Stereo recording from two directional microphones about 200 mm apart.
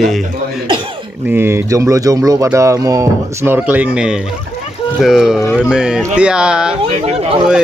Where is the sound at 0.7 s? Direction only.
25° right (ahead or behind).